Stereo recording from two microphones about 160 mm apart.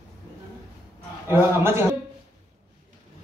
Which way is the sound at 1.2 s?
15° right (ahead or behind).